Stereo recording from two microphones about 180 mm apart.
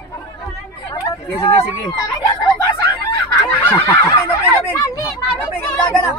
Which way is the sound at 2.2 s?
25° left (ahead or behind).